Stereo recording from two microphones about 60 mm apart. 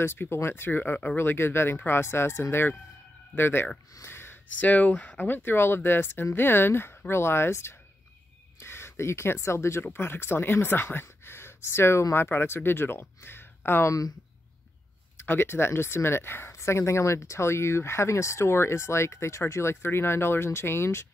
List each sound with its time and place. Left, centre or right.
0.0 s speech: left
3.9 s a sound: left
4.6 s speech: left
15.2 s speech: left